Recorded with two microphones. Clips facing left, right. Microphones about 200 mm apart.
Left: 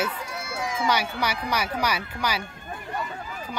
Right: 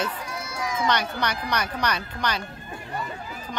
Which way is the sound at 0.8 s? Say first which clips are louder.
Even; 10° left (ahead or behind).